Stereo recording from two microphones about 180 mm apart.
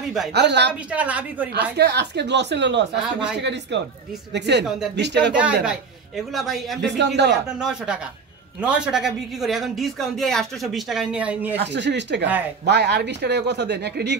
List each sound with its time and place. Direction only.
0.3 s speech: 70° right (ahead or behind)
0.9 s a woman's voice: 10° right (ahead or behind)
1.5 s speech: 65° right (ahead or behind)
5.3 s a man's voice: 5° right (ahead or behind)
7.0 s speech: 75° right (ahead or behind)
7.6 s a man's voice: 5° right (ahead or behind)
11.6 s speech: 75° right (ahead or behind)